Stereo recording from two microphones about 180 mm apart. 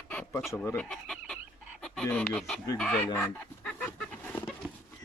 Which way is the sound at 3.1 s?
10° left (ahead or behind).